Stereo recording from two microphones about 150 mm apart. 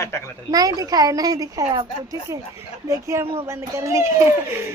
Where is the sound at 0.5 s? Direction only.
25° right (ahead or behind).